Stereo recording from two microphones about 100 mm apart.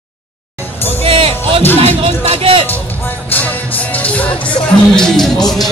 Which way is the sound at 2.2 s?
65° right (ahead or behind).